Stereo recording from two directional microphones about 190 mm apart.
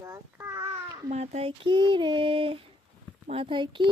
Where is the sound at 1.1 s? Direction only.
35° right (ahead or behind).